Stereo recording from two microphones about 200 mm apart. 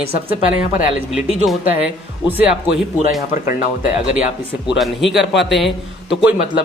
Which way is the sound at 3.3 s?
40° left (ahead or behind).